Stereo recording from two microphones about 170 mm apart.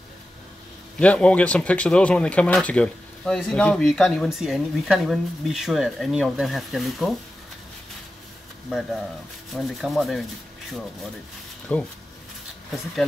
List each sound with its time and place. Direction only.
0.9 s speech: 5° left (ahead or behind)
8.6 s speech: centre (ahead or behind)
11.7 s speech: 10° left (ahead or behind)